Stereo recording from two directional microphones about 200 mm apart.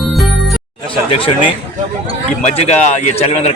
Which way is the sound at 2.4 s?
35° left (ahead or behind).